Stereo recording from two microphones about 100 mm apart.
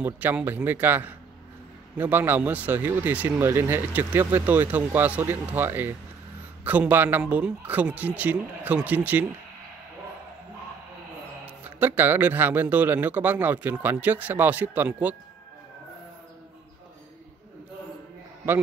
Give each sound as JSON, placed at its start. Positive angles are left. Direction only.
{"t": 0.0, "sound": "speech", "side_deg": -20}
{"t": 11.4, "sound": "speech", "side_deg": -20}